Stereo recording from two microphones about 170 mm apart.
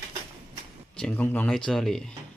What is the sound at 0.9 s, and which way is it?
Speech, 5° left (ahead or behind).